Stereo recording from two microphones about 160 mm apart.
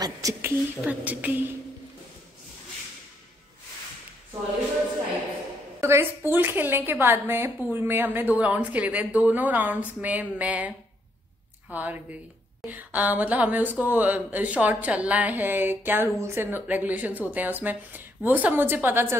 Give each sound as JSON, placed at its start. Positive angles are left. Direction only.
{"t": 0.0, "sound": "speech", "side_deg": -20}
{"t": 5.8, "sound": "speech", "side_deg": -15}
{"t": 11.7, "sound": "speech", "side_deg": -10}